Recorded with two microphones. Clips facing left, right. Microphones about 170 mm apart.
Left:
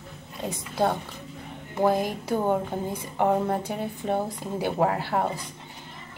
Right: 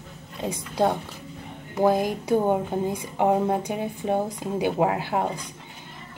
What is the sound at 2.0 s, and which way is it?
Speech, 20° right (ahead or behind).